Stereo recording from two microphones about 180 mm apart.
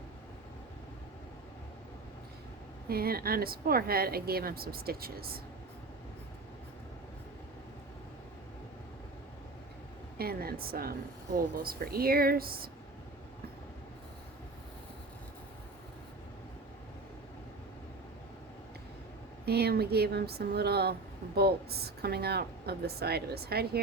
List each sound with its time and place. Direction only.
2.9 s speech: 55° right (ahead or behind)
10.2 s speech: 60° right (ahead or behind)
19.5 s speech: 60° right (ahead or behind)